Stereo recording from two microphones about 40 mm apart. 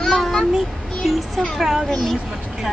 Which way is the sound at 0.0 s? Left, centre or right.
Centre.